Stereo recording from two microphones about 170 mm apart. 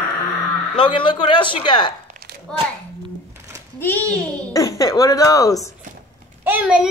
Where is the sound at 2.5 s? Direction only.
5° left (ahead or behind).